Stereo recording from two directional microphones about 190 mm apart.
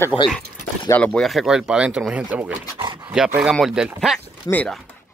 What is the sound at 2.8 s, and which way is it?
Dog, 25° right (ahead or behind).